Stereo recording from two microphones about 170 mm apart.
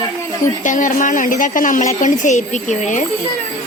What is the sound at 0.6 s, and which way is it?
A woman's voice, 50° left (ahead or behind).